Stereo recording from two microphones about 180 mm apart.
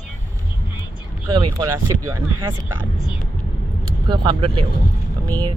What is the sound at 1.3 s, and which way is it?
Speech, 25° right (ahead or behind).